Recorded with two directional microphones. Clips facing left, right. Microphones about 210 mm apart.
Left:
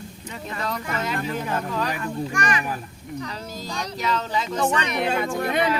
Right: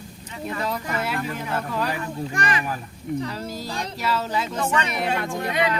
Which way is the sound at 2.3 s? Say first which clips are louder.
Right 1 dB; 35° right (ahead or behind).